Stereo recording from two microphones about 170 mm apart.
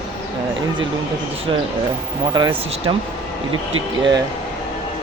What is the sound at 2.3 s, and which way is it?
Speech, 25° right (ahead or behind).